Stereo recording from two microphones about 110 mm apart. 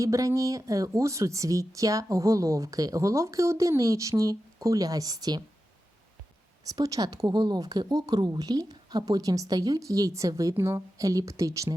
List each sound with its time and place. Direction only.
0.0 s speech: 30° right (ahead or behind)
6.7 s speech: 35° right (ahead or behind)